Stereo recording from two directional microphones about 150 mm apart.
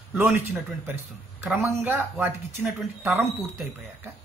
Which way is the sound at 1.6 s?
15° right (ahead or behind).